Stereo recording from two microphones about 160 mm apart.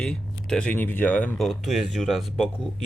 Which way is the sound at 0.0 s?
5° left (ahead or behind).